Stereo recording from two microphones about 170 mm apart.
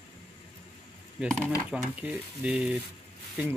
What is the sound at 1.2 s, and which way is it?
Speech, 5° right (ahead or behind).